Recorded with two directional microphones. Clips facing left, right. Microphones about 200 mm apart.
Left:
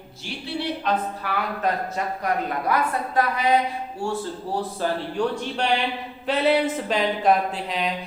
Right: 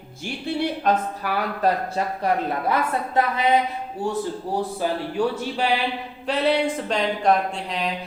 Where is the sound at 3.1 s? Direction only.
25° right (ahead or behind).